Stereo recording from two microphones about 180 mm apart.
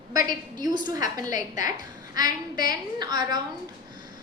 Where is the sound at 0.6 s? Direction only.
25° right (ahead or behind).